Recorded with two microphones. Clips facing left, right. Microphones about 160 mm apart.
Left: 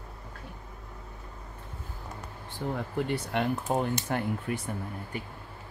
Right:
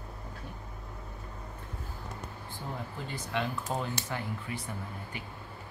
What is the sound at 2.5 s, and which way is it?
Speech, 65° left (ahead or behind).